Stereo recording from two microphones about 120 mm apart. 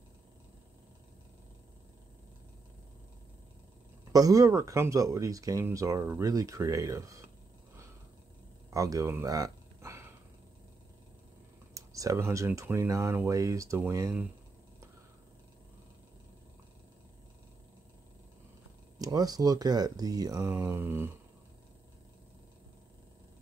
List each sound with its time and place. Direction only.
4.1 s speech: 30° right (ahead or behind)
8.6 s a sound: 30° right (ahead or behind)
11.7 s speech: 25° right (ahead or behind)
18.9 s speech: 30° right (ahead or behind)